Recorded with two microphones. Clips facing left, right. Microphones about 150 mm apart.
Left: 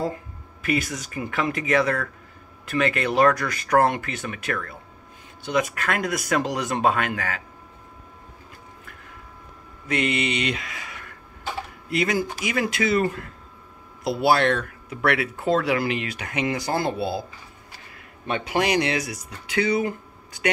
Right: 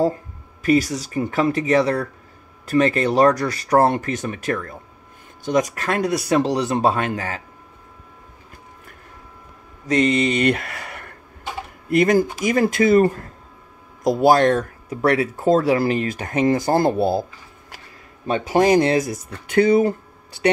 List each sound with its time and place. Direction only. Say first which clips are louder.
0.0 s speech: right 8 dB; 35° right (ahead or behind)
9.8 s speech: right 6 dB; 40° right (ahead or behind); by 11.1 s 60° right (ahead or behind)
11.9 s speech: right 8 dB; 50° right (ahead or behind)
18.2 s speech: right 7 dB; 35° right (ahead or behind)